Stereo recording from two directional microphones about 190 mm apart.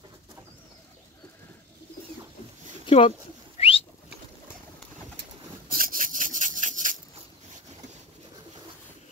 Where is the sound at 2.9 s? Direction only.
30° left (ahead or behind).